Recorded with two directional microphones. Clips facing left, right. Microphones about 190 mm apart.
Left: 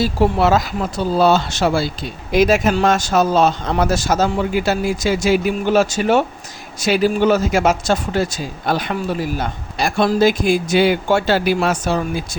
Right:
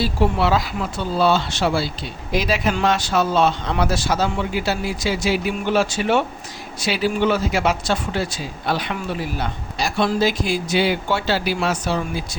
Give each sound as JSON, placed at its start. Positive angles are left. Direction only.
{"t": 0.0, "sound": "a man's voice", "side_deg": 45}